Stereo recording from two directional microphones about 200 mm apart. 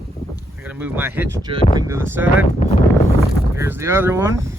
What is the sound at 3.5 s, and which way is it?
Speech, 15° right (ahead or behind).